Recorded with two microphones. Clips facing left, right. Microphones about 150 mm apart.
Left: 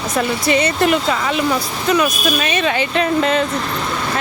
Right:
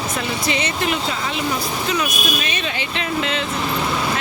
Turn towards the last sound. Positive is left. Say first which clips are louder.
# left 7 dB
turn(degrees=45)  # may be behind; listen again after turning